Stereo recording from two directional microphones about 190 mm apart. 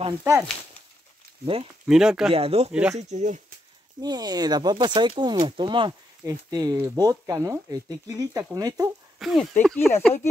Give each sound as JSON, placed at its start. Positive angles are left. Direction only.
{"t": 0.2, "sound": "speech", "side_deg": -15}
{"t": 1.4, "sound": "speech", "side_deg": -30}
{"t": 1.9, "sound": "speech", "side_deg": -5}
{"t": 2.3, "sound": "speech", "side_deg": -30}
{"t": 4.0, "sound": "speech", "side_deg": -20}
{"t": 9.2, "sound": "speech", "side_deg": 0}